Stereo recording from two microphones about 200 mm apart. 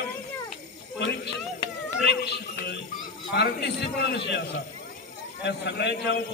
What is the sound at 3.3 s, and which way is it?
A man's voice, 55° left (ahead or behind).